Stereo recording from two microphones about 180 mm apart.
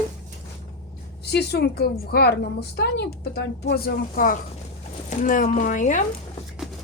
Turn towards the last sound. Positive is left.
turn(degrees=45)  # may be behind; listen again after turning